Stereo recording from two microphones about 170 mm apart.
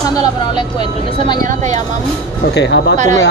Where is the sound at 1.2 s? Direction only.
25° left (ahead or behind).